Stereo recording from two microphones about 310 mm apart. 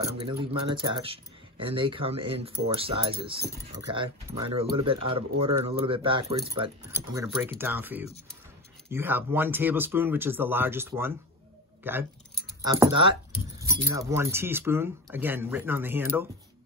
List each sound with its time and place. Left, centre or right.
0.0 s speech: centre